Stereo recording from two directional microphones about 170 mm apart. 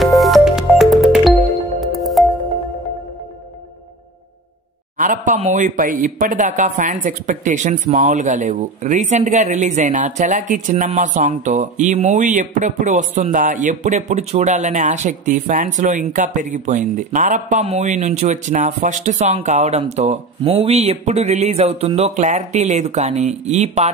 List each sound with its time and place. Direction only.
0.0 s music: centre (ahead or behind)
4.9 s speech: 50° right (ahead or behind)